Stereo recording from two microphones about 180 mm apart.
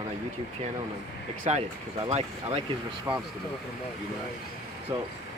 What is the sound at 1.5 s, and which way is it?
Speech, 40° right (ahead or behind).